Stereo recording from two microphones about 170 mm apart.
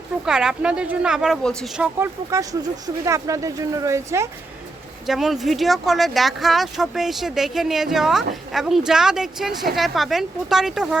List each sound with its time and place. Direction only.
0.3 s speech: 5° right (ahead or behind)
2.3 s speech: 20° right (ahead or behind)
5.0 s speech: centre (ahead or behind)